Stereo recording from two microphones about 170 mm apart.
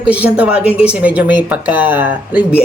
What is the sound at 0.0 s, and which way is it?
Speech, 10° right (ahead or behind).